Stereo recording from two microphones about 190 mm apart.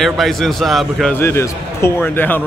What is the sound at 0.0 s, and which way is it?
Speech, centre (ahead or behind).